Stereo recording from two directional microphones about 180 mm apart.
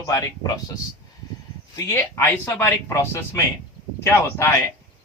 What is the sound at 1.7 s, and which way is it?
Speech, 10° left (ahead or behind).